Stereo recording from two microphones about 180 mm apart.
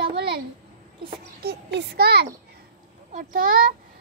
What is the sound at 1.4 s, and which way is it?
Speech, 70° right (ahead or behind).